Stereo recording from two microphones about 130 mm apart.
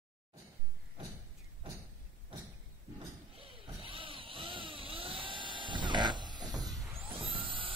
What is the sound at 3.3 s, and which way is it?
Vehicle, 45° right (ahead or behind).